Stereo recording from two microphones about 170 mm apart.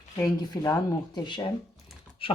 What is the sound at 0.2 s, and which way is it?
Speech, 20° left (ahead or behind).